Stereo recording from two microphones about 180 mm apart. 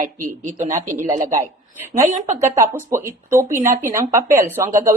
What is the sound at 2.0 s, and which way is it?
Speech, 45° right (ahead or behind).